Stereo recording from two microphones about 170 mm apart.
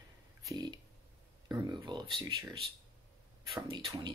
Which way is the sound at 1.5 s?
25° right (ahead or behind).